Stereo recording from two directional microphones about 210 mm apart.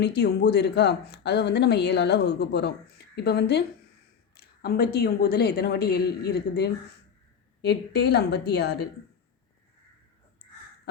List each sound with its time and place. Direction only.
0.0 s speech: 50° left (ahead or behind)